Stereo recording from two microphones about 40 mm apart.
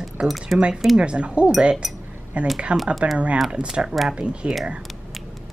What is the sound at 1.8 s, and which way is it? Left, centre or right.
Speech, centre.